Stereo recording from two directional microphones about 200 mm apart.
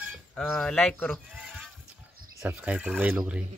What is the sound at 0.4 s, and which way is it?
Speech, 5° left (ahead or behind).